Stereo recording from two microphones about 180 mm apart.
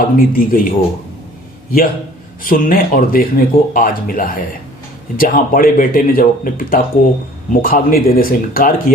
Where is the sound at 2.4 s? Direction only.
50° left (ahead or behind).